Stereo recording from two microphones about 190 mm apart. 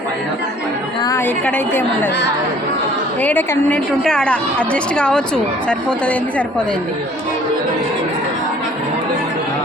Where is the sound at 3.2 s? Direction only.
10° left (ahead or behind).